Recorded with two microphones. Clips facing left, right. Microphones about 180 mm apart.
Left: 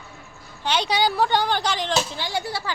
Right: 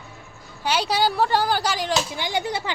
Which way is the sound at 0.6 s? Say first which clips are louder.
Even; 5° right (ahead or behind).